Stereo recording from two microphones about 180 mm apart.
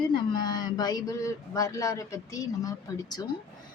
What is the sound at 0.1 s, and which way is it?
Speech, 25° left (ahead or behind).